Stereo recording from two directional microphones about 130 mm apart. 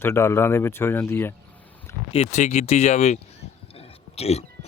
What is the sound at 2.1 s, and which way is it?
Speech, 60° left (ahead or behind).